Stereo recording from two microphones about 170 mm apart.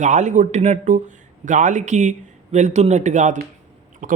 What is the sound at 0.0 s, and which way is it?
Speech, 45° right (ahead or behind).